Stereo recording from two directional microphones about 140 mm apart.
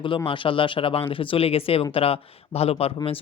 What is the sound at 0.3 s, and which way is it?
Speech, 40° left (ahead or behind).